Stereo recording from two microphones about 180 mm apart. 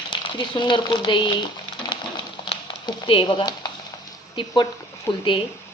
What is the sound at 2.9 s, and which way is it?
A woman's voice, 25° left (ahead or behind).